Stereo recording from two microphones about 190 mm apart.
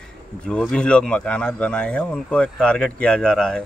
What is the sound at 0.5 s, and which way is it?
Speech, 5° left (ahead or behind).